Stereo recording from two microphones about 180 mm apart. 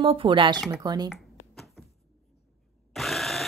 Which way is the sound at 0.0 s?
30° right (ahead or behind).